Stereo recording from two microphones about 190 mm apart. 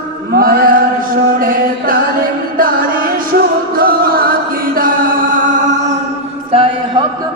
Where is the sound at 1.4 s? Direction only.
50° right (ahead or behind).